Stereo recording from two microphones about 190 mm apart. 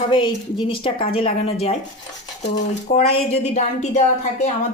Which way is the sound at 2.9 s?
35° left (ahead or behind).